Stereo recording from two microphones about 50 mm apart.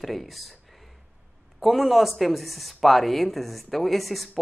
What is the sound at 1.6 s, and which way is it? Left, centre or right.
Speech, centre.